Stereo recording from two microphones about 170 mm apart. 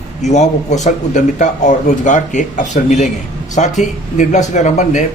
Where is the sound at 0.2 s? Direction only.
45° left (ahead or behind).